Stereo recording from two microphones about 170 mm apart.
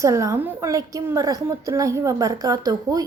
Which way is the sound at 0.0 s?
20° right (ahead or behind).